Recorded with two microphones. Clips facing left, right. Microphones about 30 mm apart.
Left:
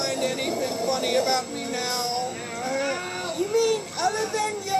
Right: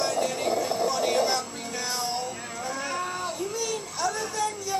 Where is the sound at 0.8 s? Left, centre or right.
Left.